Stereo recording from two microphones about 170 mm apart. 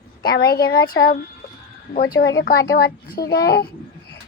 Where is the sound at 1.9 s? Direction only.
60° left (ahead or behind).